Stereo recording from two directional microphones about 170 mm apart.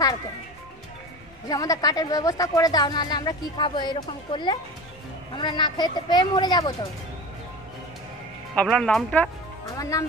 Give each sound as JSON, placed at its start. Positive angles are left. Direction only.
{"t": 1.5, "sound": "a woman's voice", "side_deg": 20}
{"t": 8.5, "sound": "speech", "side_deg": 5}
{"t": 9.7, "sound": "speech", "side_deg": 20}